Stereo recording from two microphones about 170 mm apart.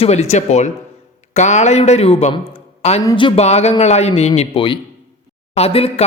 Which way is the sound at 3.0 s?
30° left (ahead or behind).